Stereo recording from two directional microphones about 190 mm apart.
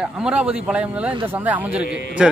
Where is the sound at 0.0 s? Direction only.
5° right (ahead or behind).